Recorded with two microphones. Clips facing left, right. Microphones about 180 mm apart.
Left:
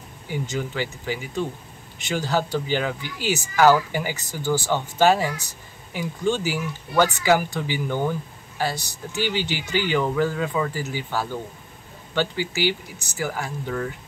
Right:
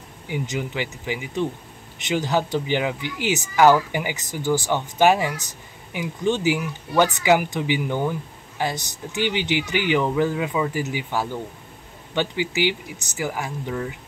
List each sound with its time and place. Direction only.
0.3 s speech: 20° right (ahead or behind)